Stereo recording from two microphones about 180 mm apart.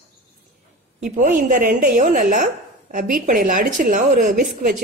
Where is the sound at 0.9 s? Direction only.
45° right (ahead or behind).